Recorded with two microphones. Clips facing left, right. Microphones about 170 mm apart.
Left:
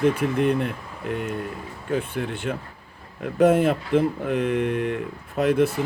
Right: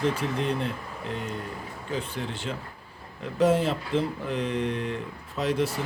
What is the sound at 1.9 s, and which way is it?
Speech, 55° left (ahead or behind).